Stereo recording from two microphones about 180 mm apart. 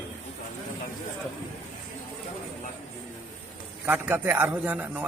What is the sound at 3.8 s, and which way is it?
A man's voice, 10° right (ahead or behind).